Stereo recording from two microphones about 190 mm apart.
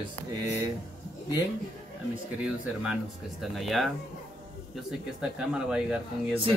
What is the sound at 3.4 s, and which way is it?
Speech, centre (ahead or behind).